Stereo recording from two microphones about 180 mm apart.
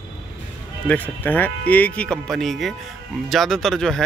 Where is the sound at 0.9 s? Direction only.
10° left (ahead or behind).